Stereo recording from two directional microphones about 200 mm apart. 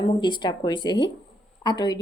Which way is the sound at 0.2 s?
20° left (ahead or behind).